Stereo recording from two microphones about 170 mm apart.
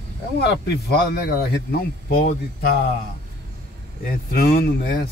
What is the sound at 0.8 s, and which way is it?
A man's voice, 70° left (ahead or behind).